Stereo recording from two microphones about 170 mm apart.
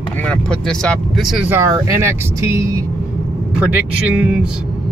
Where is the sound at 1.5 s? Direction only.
15° right (ahead or behind).